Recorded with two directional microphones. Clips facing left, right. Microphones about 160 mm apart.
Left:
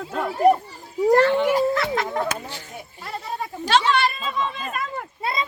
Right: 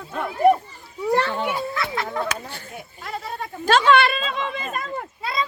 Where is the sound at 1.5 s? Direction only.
45° left (ahead or behind).